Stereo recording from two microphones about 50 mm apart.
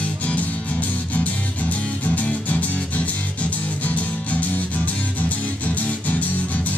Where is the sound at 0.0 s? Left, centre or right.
Left.